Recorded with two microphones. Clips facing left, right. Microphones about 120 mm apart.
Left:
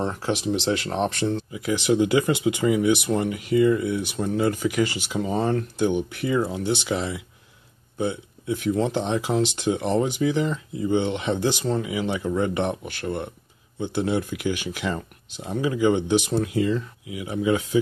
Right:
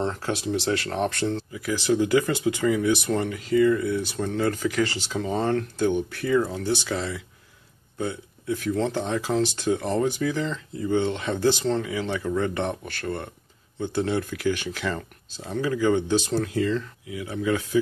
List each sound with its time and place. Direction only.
0.0 s speech: 15° left (ahead or behind)